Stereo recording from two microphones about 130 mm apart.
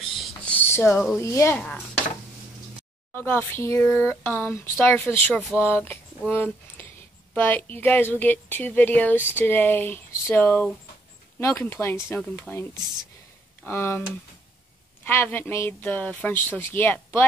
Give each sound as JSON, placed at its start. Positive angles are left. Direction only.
{"t": 0.5, "sound": "a sound", "side_deg": 15}
{"t": 1.1, "sound": "speech", "side_deg": 20}
{"t": 3.2, "sound": "speech", "side_deg": 15}
{"t": 13.7, "sound": "speech", "side_deg": 20}
{"t": 15.0, "sound": "speech", "side_deg": 15}